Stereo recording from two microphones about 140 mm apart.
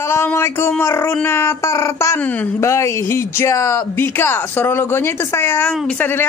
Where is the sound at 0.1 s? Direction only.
15° left (ahead or behind).